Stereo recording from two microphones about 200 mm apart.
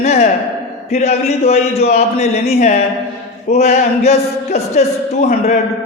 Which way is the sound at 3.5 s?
30° left (ahead or behind).